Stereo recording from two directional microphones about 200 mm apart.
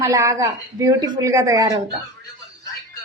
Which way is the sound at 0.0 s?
15° right (ahead or behind).